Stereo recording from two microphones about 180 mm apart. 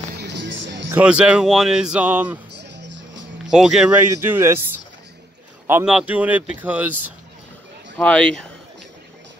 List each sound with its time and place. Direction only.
0.2 s music: 80° right
0.9 s speech: 5° right (ahead or behind)
2.5 s music: 75° right (ahead or behind)
3.4 s speech: 5° right (ahead or behind)
5.7 s speech: 10° right (ahead or behind)
8.0 s speech: 5° left (ahead or behind)